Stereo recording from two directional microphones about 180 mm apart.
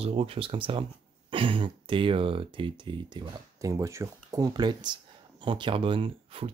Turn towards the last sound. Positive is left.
turn(degrees=-30)  # may be behind; listen again after turning